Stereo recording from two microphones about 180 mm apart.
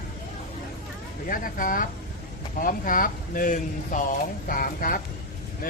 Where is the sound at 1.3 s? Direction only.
50° left (ahead or behind).